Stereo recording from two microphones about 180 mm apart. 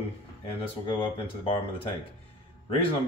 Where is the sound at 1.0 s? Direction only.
30° left (ahead or behind).